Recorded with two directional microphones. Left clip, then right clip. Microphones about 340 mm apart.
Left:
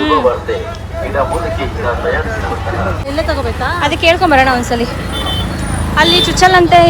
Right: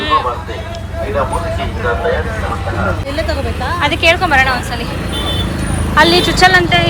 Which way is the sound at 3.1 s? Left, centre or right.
Left.